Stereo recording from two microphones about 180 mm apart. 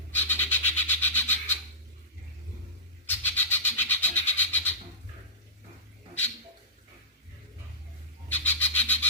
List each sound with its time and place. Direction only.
0.1 s bird: 10° left (ahead or behind)
3.1 s bird: 10° left (ahead or behind)
8.3 s squawk: 10° left (ahead or behind)